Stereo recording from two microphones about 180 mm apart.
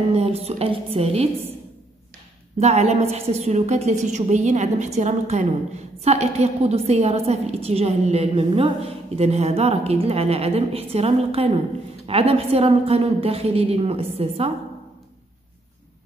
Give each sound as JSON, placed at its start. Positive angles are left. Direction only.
{"t": 0.1, "sound": "a woman's voice", "side_deg": -35}
{"t": 2.5, "sound": "a woman's voice", "side_deg": -35}